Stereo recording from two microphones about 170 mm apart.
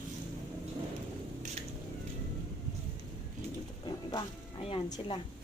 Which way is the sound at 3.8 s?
30° left (ahead or behind).